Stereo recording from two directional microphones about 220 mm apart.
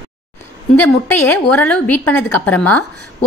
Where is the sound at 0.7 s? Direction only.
10° left (ahead or behind).